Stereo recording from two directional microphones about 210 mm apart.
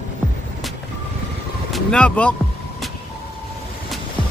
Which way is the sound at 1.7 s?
5° left (ahead or behind).